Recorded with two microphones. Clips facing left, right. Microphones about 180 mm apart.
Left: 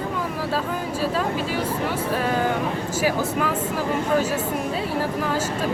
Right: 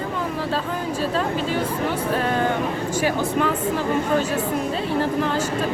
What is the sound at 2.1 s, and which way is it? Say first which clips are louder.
Speech: even; 5° left (ahead or behind).